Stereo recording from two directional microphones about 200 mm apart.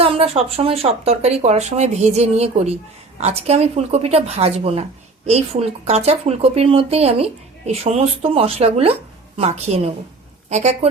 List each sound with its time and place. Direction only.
0.0 s speech: 30° right (ahead or behind)